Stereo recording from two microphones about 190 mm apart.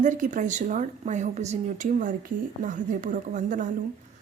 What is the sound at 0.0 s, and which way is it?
A woman's voice, 40° right (ahead or behind).